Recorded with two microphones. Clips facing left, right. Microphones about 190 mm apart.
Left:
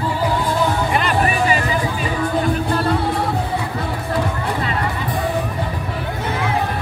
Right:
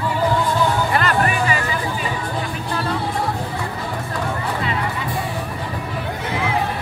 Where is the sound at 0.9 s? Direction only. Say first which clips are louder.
Left 1 dB; 15° left (ahead or behind).